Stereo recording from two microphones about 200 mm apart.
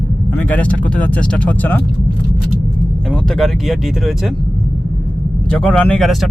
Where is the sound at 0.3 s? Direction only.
10° left (ahead or behind).